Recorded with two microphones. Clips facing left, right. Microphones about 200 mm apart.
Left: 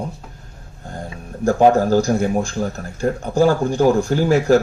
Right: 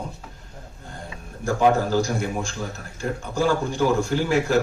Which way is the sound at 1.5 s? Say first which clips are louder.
Left 6 dB; 45° left (ahead or behind).